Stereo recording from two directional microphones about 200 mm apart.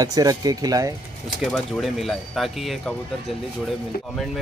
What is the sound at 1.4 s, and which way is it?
Speech, centre (ahead or behind).